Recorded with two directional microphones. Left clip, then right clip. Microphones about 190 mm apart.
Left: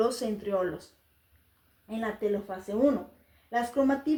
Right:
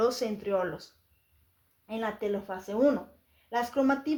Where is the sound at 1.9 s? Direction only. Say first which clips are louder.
Left 1 dB; 30° right (ahead or behind).